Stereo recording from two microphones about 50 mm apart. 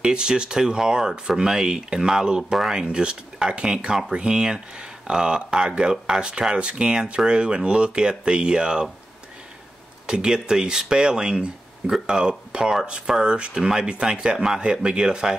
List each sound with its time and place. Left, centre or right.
0.0 s speech: centre
10.0 s speech: centre